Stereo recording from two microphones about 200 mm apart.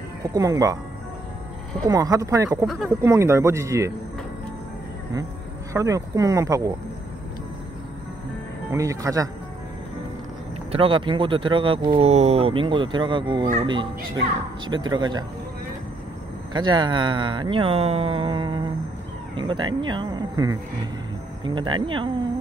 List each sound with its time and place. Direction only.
0.2 s speech: 15° right (ahead or behind)
1.9 s speech: 15° right (ahead or behind)
2.6 s speech: centre (ahead or behind)
2.9 s speech: 15° right (ahead or behind)
5.7 s speech: 15° right (ahead or behind)
8.7 s speech: 15° right (ahead or behind)
10.7 s speech: 25° right (ahead or behind)
16.5 s speech: 20° right (ahead or behind)